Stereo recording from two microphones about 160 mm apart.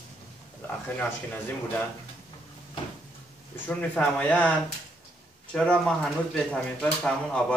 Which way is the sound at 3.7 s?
10° left (ahead or behind).